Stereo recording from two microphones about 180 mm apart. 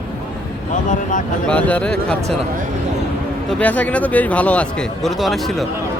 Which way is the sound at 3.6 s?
10° left (ahead or behind).